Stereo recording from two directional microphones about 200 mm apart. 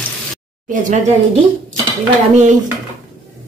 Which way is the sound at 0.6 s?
40° right (ahead or behind).